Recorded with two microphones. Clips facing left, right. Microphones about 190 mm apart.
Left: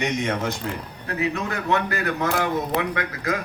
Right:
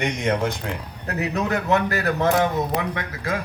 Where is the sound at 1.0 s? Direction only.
40° right (ahead or behind).